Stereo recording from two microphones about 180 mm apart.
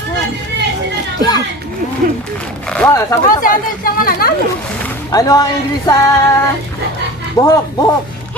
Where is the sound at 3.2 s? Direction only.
50° left (ahead or behind).